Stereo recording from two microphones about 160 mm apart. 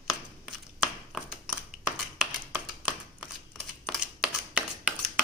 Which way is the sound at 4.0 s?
10° right (ahead or behind).